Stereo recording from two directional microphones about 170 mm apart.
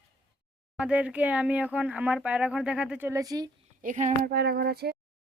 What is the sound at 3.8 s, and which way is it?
A woman's voice, 50° right (ahead or behind).